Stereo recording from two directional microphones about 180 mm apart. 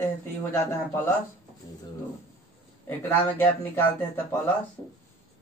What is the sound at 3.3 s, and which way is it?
Speech, 10° left (ahead or behind).